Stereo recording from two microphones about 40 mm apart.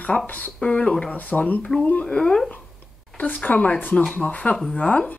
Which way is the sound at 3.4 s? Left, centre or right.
Left.